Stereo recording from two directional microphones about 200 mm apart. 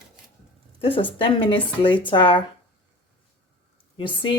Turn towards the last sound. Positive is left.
turn(degrees=25)  # may be behind; listen again after turning